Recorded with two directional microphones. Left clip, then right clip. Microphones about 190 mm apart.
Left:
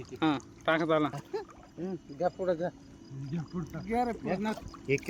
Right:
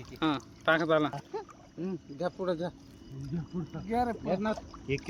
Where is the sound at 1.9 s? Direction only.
50° right (ahead or behind).